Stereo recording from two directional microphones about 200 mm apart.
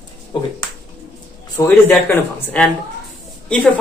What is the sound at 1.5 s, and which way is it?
A woman's voice, 10° left (ahead or behind).